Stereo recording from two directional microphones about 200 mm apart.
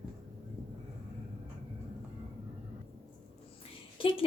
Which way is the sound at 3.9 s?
25° left (ahead or behind).